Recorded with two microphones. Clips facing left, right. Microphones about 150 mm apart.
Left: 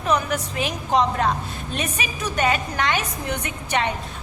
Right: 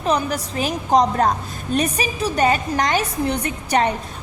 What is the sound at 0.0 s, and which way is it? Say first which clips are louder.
A woman's voice: right 2 dB; 35° right (ahead or behind).